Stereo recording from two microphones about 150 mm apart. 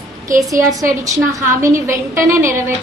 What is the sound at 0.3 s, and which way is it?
A woman's voice, 20° right (ahead or behind).